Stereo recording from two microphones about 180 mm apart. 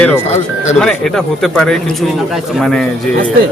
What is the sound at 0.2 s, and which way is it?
Speech, 40° left (ahead or behind).